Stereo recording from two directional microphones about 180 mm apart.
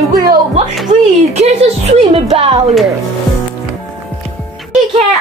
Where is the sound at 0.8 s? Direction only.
40° right (ahead or behind).